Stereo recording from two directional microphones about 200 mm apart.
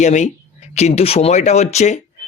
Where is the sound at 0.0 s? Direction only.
35° left (ahead or behind).